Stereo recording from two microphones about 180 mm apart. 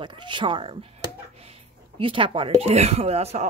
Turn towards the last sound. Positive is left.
turn(degrees=-35)  # may be behind; listen again after turning